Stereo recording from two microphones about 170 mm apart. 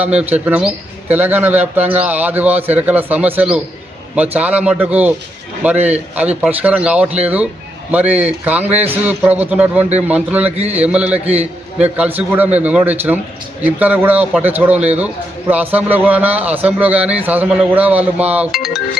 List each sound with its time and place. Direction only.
0.2 s a man's voice: 10° right (ahead or behind)
10.6 s speech: 40° right (ahead or behind)
10.8 s a man's voice: 5° right (ahead or behind)